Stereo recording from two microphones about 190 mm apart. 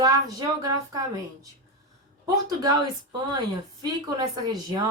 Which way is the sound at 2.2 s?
20° right (ahead or behind).